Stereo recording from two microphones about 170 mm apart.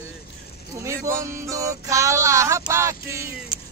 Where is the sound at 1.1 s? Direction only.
15° right (ahead or behind).